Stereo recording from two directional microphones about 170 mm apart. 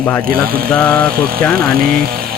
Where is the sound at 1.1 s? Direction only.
60° right (ahead or behind).